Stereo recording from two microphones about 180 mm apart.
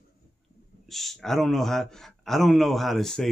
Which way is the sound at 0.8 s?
Centre (ahead or behind).